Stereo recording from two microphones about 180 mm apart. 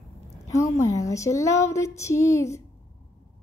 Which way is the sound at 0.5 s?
20° left (ahead or behind).